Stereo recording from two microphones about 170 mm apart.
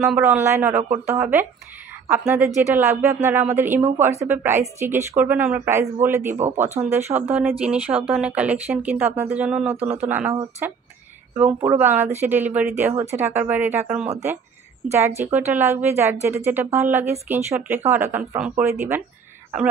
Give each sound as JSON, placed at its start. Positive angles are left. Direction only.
{"t": 0.0, "sound": "speech", "side_deg": -10}